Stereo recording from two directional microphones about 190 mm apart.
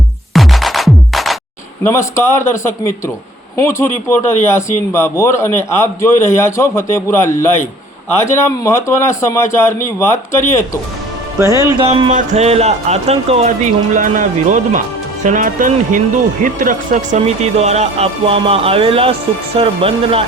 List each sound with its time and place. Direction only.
0.3 s music: centre (ahead or behind)
1.8 s a man's voice: 15° left (ahead or behind)
3.6 s a man's voice: 15° left (ahead or behind)
11.3 s speech: 15° right (ahead or behind)
11.9 s speech: 35° right (ahead or behind)